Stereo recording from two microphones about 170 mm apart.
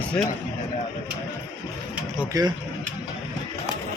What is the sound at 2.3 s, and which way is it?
Speech, 20° right (ahead or behind).